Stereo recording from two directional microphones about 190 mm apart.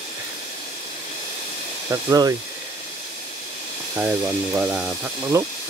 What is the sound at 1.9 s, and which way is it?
Speech, 20° right (ahead or behind).